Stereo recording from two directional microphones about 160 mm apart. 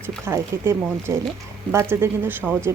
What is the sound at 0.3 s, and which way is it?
Speech, 15° right (ahead or behind).